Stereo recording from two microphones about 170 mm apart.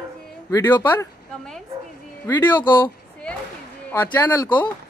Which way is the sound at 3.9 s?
15° left (ahead or behind).